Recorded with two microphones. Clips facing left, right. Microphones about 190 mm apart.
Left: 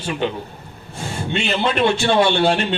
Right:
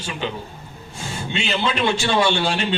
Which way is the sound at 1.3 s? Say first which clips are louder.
Left 3 dB; 55° left (ahead or behind).